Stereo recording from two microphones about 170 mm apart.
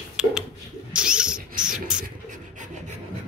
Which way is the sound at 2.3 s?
45° right (ahead or behind).